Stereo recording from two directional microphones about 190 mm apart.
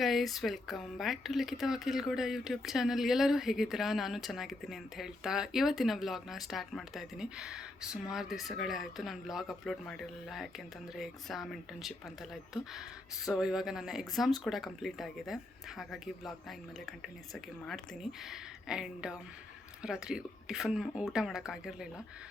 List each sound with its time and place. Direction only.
0.0 s speech: centre (ahead or behind)